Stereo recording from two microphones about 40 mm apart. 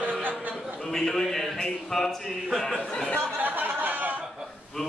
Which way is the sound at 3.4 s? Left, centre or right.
Right.